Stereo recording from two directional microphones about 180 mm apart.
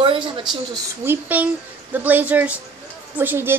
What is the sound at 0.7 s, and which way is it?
A woman's voice, 10° right (ahead or behind).